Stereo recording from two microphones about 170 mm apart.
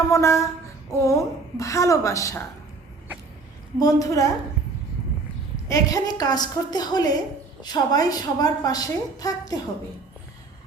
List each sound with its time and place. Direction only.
0.1 s a woman's voice: 15° left (ahead or behind)
3.8 s a woman's voice: 20° left (ahead or behind)
5.6 s a woman's voice: 20° left (ahead or behind)